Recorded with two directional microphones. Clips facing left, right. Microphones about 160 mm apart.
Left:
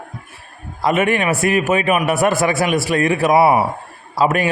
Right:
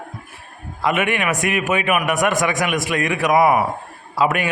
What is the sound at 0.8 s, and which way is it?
A man's voice, 35° left (ahead or behind).